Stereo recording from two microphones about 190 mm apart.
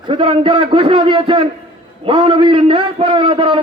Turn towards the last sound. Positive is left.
turn(degrees=-30)  # may be behind; listen again after turning